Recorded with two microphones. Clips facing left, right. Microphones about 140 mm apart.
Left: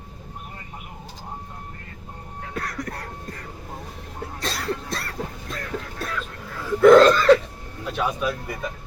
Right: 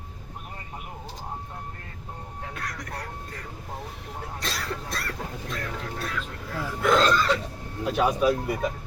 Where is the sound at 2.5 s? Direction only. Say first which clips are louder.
Left 7 dB; 40° left (ahead or behind).